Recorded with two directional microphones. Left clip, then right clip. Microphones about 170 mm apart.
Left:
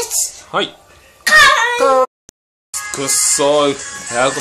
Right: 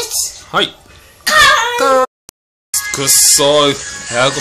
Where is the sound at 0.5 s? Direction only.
10° left (ahead or behind).